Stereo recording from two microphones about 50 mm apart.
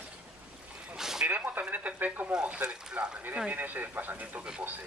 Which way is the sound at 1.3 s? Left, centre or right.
Right.